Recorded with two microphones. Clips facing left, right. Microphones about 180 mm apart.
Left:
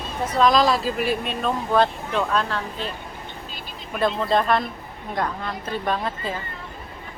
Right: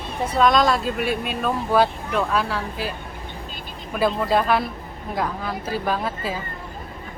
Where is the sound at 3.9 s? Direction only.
5° right (ahead or behind).